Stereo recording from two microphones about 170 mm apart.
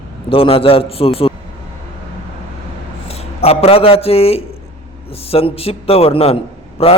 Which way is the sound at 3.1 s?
35° left (ahead or behind).